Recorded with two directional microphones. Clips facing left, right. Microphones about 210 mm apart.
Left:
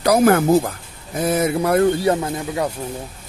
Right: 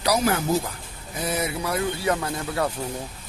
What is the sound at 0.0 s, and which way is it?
Speech, 55° left (ahead or behind).